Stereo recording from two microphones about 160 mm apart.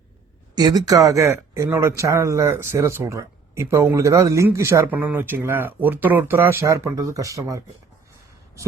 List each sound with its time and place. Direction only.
0.5 s speech: 25° right (ahead or behind)